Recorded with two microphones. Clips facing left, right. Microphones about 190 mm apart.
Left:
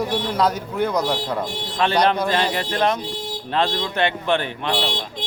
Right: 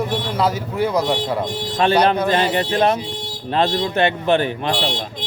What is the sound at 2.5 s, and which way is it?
Speech, 25° right (ahead or behind).